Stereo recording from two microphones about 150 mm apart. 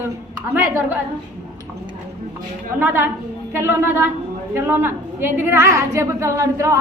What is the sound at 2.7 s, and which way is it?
A woman's voice, 15° right (ahead or behind).